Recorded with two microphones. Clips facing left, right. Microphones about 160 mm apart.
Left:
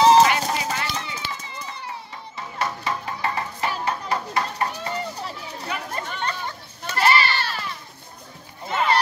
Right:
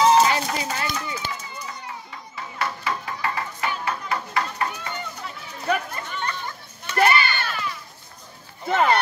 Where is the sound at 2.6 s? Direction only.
25° left (ahead or behind).